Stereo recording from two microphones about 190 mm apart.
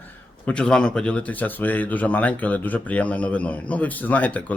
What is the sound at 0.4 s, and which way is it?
Speech, 5° left (ahead or behind).